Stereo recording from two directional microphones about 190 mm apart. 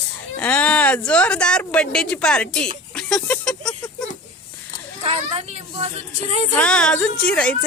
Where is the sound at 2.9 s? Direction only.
5° left (ahead or behind).